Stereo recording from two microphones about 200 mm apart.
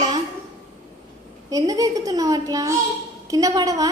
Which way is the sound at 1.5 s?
20° right (ahead or behind).